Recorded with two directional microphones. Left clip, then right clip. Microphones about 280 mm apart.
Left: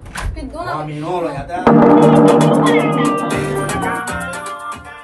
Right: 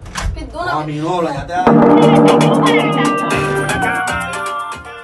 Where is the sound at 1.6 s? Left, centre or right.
Centre.